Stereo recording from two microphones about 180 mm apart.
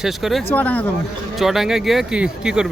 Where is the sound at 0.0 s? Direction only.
Centre (ahead or behind).